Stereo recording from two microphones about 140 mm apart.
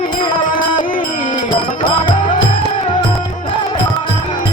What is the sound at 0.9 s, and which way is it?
Music, 75° left (ahead or behind).